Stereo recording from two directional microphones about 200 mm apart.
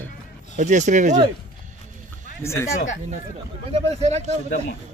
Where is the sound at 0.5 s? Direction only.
35° right (ahead or behind).